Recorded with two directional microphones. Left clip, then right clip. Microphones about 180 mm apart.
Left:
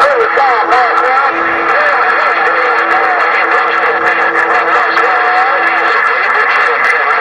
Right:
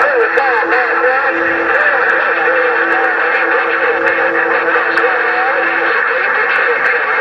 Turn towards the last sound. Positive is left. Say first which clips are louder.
# left 3 dB
turn(degrees=45)  # may be behind; listen again after turning